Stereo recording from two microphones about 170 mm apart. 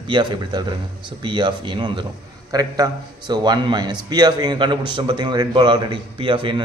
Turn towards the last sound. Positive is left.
turn(degrees=-30)  # may be behind; listen again after turning